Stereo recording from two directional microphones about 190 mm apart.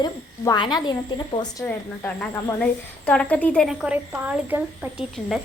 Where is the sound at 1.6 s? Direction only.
10° left (ahead or behind).